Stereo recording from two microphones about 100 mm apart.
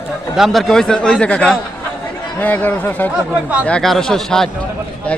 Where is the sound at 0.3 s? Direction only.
Centre (ahead or behind); by 3.1 s 20° left (ahead or behind).